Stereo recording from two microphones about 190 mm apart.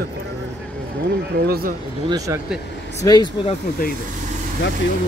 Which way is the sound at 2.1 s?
20° right (ahead or behind).